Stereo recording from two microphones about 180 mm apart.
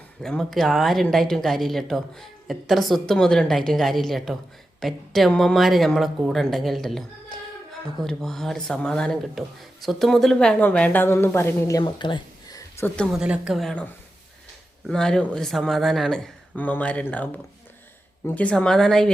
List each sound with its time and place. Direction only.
0.2 s a woman's voice: 5° left (ahead or behind)
11.8 s a sound: 25° left (ahead or behind)
13.0 s a woman's voice: 5° right (ahead or behind)